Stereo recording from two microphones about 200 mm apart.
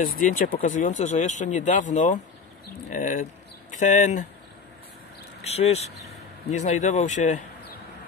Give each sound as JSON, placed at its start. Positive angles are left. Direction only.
{"t": 0.0, "sound": "speech", "side_deg": 45}
{"t": 5.4, "sound": "speech", "side_deg": 30}